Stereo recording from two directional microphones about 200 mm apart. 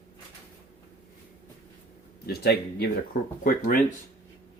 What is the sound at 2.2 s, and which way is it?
Speech, 55° left (ahead or behind).